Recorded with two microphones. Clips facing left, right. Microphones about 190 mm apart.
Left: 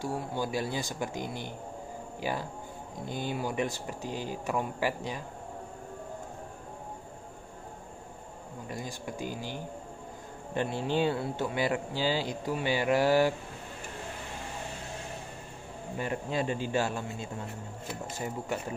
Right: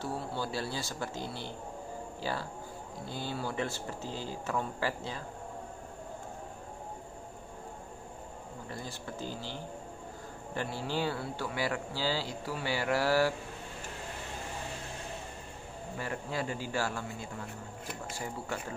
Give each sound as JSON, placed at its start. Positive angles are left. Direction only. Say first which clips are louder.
{"t": 0.0, "sound": "speech", "louder": "left 3 dB", "side_deg": 15}
{"t": 8.6, "sound": "speech", "louder": "left 4 dB", "side_deg": 15}
{"t": 16.0, "sound": "speech", "louder": "left 4 dB", "side_deg": 20}